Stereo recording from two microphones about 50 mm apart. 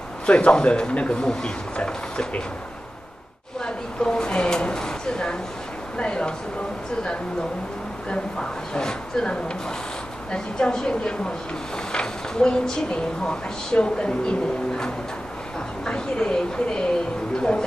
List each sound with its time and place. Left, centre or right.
0.3 s speech: left
3.6 s a sound: centre
5.9 s speech: centre
8.1 s a woman's voice: centre
15.8 s a woman's voice: centre